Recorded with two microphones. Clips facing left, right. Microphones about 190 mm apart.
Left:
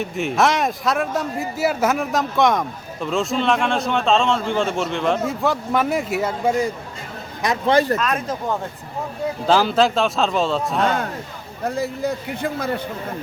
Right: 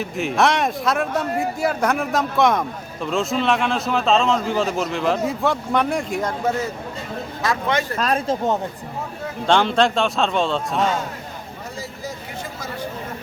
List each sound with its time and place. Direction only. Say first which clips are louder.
0.0 s speech: even; centre (ahead or behind)
7.7 s speech: left 9 dB; 35° left (ahead or behind)
7.9 s speech: right 2 dB; 30° right (ahead or behind)
9.5 s speech: even; 5° left (ahead or behind)
11.6 s speech: left 11 dB; 60° left (ahead or behind)